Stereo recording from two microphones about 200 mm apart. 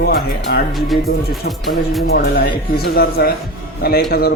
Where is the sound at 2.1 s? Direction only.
50° left (ahead or behind).